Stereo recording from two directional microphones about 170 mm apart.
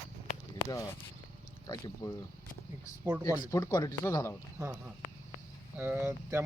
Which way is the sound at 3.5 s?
20° left (ahead or behind).